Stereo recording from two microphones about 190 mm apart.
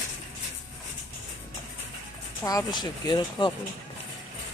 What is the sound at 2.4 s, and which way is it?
Speech, 20° left (ahead or behind).